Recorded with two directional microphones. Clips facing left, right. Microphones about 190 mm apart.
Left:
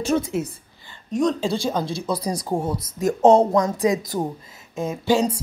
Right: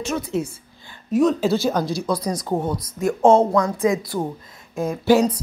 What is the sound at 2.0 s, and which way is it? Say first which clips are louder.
Speech: right 2 dB; 30° left (ahead or behind).